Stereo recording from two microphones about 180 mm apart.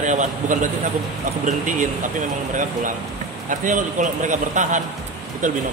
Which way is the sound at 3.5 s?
45° right (ahead or behind).